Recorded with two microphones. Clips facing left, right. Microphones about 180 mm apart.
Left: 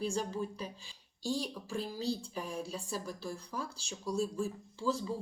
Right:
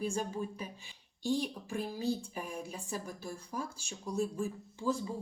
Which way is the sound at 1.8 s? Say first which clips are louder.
Right 2 dB; 55° right (ahead or behind).